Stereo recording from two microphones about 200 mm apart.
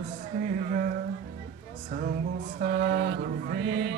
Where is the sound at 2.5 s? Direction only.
45° right (ahead or behind).